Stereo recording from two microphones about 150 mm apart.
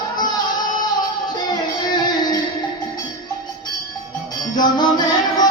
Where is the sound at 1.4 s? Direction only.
30° left (ahead or behind).